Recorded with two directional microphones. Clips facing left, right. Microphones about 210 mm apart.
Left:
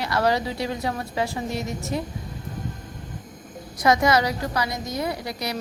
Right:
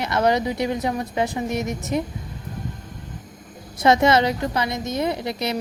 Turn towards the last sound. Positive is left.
turn(degrees=-25)  # may be behind; listen again after turning